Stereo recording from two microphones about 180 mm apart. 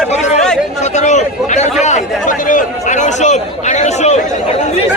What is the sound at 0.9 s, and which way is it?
A man's voice, 40° left (ahead or behind).